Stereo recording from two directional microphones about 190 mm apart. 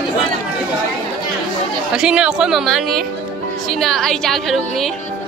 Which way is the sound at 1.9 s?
5° right (ahead or behind).